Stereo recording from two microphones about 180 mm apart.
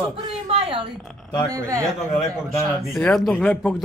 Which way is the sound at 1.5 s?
15° right (ahead or behind).